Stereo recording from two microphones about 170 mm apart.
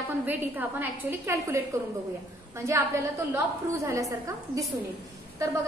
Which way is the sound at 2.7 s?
15° right (ahead or behind).